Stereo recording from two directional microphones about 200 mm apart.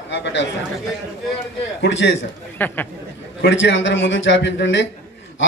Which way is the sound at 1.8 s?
65° left (ahead or behind).